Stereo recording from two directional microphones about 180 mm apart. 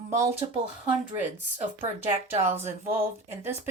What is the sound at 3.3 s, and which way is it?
Speech, 10° right (ahead or behind).